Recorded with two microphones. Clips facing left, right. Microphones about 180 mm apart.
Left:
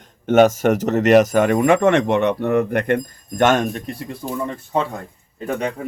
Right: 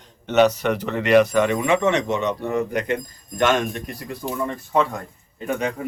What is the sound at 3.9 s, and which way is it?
Speech, 25° left (ahead or behind).